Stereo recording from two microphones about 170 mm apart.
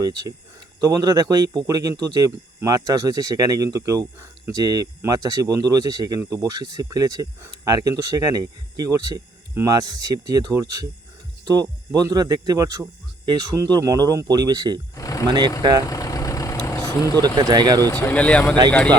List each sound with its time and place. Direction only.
0.0 s speech: 20° right (ahead or behind)
14.9 s a sound: 20° left (ahead or behind)
15.3 s speech: 25° right (ahead or behind)
15.8 s vehicle: 20° left (ahead or behind)
17.2 s speech: 25° right (ahead or behind)
17.8 s speech: 10° left (ahead or behind)